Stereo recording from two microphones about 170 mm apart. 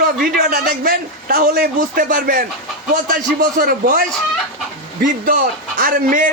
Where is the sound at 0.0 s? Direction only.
60° right (ahead or behind).